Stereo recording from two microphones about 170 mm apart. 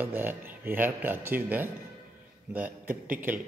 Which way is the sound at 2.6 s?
55° right (ahead or behind).